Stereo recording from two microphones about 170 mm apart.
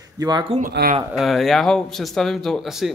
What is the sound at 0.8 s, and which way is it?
Speech, 65° right (ahead or behind).